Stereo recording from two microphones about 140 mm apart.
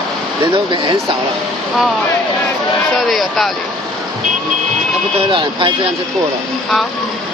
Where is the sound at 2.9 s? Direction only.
Centre (ahead or behind).